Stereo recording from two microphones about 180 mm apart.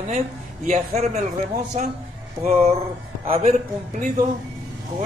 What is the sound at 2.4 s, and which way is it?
Speech, 40° right (ahead or behind).